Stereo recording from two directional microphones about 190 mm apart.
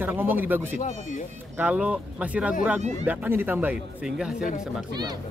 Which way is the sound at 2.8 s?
35° right (ahead or behind).